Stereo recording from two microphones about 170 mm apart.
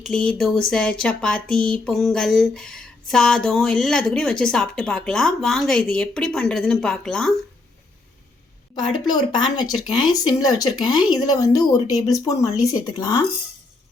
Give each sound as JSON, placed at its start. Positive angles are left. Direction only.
{"t": 0.0, "sound": "speech", "side_deg": 5}
{"t": 9.0, "sound": "speech", "side_deg": 25}